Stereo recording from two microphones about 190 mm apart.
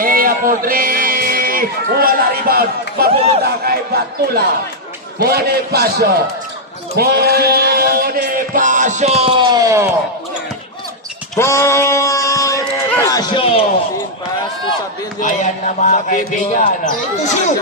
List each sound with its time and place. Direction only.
0.0 s a man's voice: 50° right (ahead or behind)
5.2 s a man's voice: 55° right (ahead or behind)
6.9 s bleat: 55° right (ahead or behind); by 9.9 s 15° right (ahead or behind)
11.3 s a sound: 15° left (ahead or behind)
13.4 s speech: 30° left (ahead or behind)
15.2 s a man's voice: 40° left (ahead or behind)